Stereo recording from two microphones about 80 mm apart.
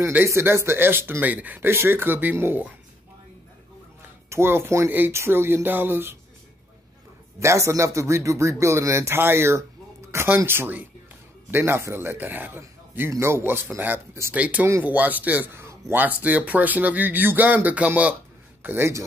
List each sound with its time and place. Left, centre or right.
0.0 s speech: right
4.3 s speech: right
7.3 s a man's voice: right